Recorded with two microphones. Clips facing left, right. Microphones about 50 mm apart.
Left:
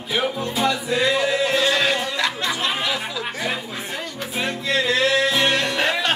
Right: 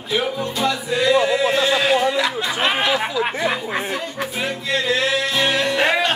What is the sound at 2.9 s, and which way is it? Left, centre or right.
Speech, right.